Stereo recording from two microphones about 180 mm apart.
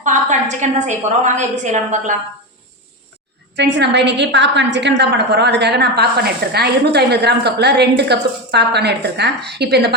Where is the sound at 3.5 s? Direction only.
70° right (ahead or behind).